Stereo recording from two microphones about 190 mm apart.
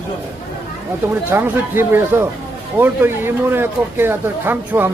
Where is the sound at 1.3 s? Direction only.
10° right (ahead or behind).